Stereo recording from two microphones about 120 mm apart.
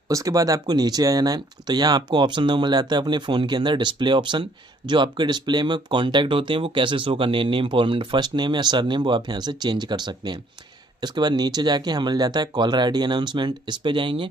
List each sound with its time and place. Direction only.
0.1 s speech: 30° right (ahead or behind); by 14.2 s 45° right (ahead or behind)